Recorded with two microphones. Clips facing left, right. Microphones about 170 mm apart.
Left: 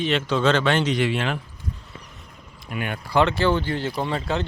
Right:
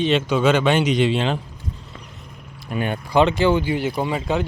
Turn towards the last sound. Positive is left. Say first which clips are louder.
# right 3 dB
turn(degrees=-10)  # may be behind; listen again after turning